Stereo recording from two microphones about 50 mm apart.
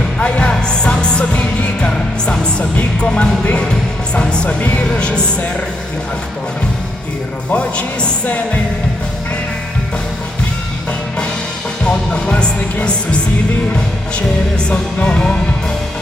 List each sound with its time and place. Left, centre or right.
0.2 s music: left
7.5 s music: left
11.9 s music: centre
14.7 s music: left